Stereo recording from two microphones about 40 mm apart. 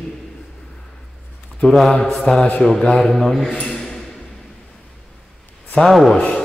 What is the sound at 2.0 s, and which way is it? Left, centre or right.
Speech, centre.